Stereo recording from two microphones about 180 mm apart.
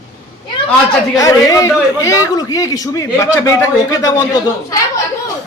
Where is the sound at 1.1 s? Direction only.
20° left (ahead or behind).